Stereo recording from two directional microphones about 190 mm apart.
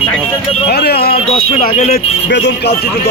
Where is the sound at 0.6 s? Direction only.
55° left (ahead or behind).